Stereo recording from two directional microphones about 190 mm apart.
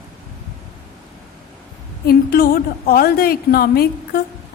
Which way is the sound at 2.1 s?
50° left (ahead or behind).